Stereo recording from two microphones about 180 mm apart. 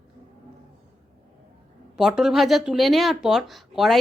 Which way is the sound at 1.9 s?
Centre (ahead or behind).